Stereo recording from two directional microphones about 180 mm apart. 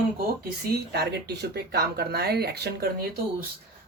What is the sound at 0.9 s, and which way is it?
Speech, 65° right (ahead or behind).